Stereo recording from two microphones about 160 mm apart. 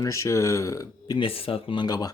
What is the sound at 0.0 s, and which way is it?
Speech, 20° left (ahead or behind).